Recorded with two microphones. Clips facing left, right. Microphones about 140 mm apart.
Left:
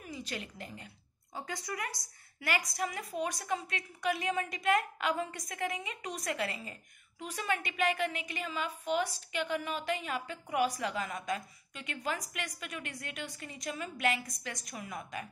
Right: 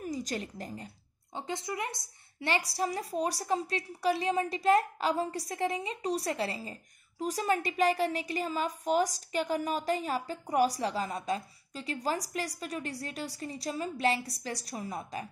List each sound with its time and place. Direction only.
0.0 s a woman's voice: 40° right (ahead or behind)
1.3 s a woman's voice: 25° right (ahead or behind)